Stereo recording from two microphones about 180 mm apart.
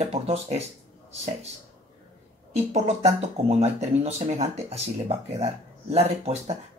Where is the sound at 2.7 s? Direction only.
35° right (ahead or behind).